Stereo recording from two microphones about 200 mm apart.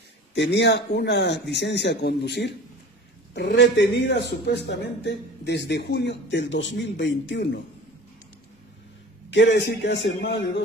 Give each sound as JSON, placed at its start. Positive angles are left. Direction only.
{"t": 0.3, "sound": "speech", "side_deg": 60}
{"t": 9.3, "sound": "speech", "side_deg": 60}